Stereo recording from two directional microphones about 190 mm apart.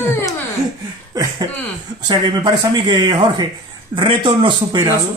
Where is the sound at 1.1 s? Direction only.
20° right (ahead or behind).